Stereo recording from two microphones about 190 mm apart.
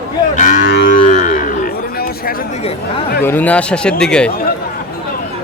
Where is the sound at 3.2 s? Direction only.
10° left (ahead or behind).